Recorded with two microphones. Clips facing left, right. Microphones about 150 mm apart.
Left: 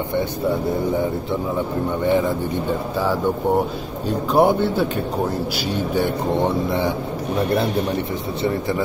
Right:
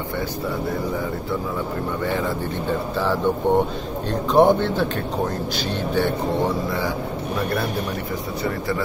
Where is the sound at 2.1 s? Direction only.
20° left (ahead or behind).